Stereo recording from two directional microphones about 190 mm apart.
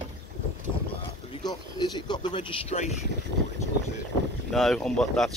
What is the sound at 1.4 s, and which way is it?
Speech, 20° left (ahead or behind).